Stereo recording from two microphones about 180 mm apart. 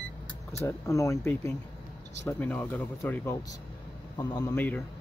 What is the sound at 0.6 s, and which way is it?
Speech, 15° left (ahead or behind).